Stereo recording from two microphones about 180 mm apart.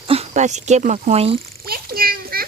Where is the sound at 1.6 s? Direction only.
55° right (ahead or behind).